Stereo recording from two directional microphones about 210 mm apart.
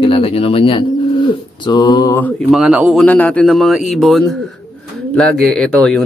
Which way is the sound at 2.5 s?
5° right (ahead or behind).